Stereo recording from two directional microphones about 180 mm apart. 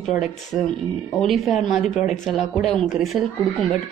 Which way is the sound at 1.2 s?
Centre (ahead or behind).